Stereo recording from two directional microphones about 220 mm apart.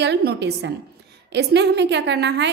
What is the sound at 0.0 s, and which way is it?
A woman's voice, 50° right (ahead or behind).